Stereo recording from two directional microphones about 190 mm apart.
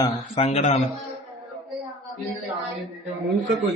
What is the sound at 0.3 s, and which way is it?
Speech, 35° left (ahead or behind).